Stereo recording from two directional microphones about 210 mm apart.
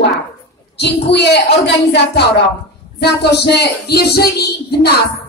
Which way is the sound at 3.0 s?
50° left (ahead or behind).